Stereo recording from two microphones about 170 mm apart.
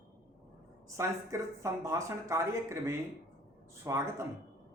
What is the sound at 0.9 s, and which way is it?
Speech, 15° right (ahead or behind).